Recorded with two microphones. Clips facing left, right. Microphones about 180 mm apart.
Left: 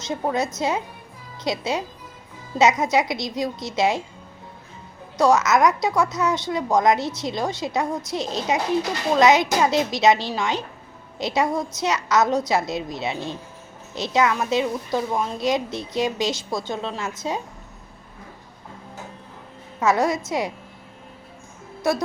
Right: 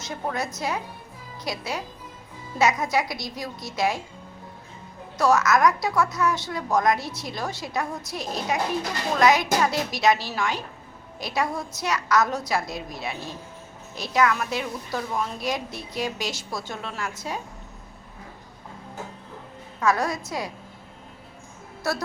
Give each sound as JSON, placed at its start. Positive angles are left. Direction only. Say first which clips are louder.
{"t": 0.1, "sound": "a woman's voice", "louder": "left 6 dB", "side_deg": 20}
{"t": 5.1, "sound": "a woman's voice", "louder": "left 3 dB", "side_deg": 20}
{"t": 19.8, "sound": "a woman's voice", "louder": "left 4 dB", "side_deg": 20}